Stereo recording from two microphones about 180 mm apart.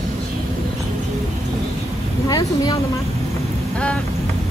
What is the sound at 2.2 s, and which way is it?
Speech, 20° left (ahead or behind).